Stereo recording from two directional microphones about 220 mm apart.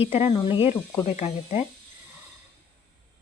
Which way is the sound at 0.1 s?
25° left (ahead or behind).